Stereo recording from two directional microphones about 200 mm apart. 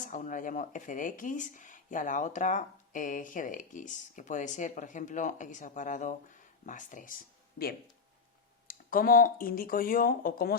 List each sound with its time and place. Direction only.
0.0 s speech: 40° left (ahead or behind)
8.6 s speech: 45° left (ahead or behind)